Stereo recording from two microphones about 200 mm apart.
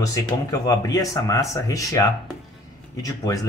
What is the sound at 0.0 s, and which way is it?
Speech, 15° left (ahead or behind).